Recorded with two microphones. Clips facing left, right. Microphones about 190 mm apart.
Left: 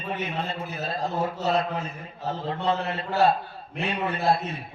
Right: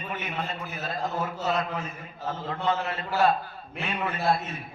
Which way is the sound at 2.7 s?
30° left (ahead or behind).